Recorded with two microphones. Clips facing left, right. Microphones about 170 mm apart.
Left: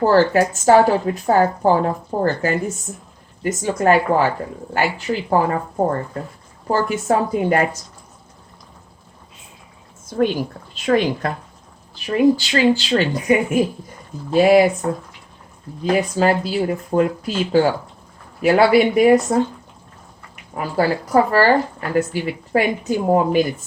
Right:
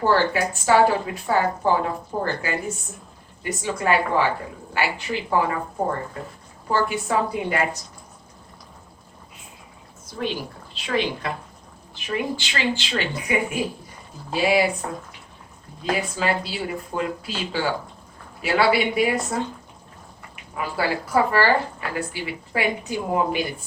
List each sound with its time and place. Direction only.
0.0 s speech: 45° left (ahead or behind)
10.1 s speech: 50° left (ahead or behind)
15.8 s speech: 45° left (ahead or behind)